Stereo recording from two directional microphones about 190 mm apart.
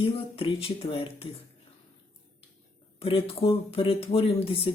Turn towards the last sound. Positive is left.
turn(degrees=30)  # may be behind; listen again after turning